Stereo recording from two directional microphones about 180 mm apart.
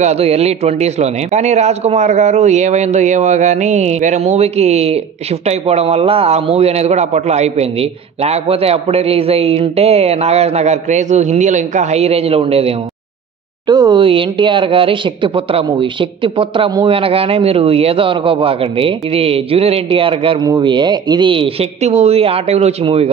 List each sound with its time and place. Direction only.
0.0 s a man's voice: 35° right (ahead or behind)
13.7 s speech: 25° right (ahead or behind)